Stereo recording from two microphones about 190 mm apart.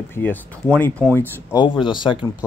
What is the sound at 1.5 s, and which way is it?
Speech, 25° left (ahead or behind).